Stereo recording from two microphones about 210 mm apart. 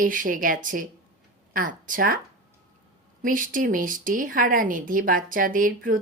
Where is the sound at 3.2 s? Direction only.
40° right (ahead or behind).